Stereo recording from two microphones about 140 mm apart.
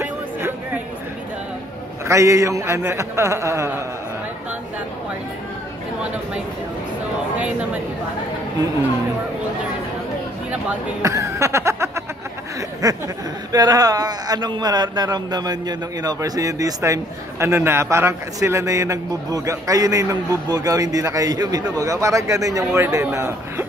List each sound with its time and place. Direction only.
0.0 s music: 15° right (ahead or behind)
2.0 s speech: 20° right (ahead or behind)
10.5 s speech: 10° right (ahead or behind)
11.1 s snicker: 20° right (ahead or behind)
12.8 s speech: 25° right (ahead or behind)